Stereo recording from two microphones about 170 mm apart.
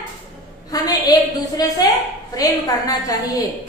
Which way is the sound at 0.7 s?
20° left (ahead or behind).